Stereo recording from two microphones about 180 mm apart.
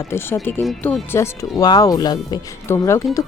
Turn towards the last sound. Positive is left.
turn(degrees=15)  # may be behind; listen again after turning